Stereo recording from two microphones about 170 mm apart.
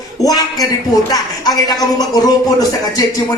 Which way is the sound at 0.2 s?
25° left (ahead or behind).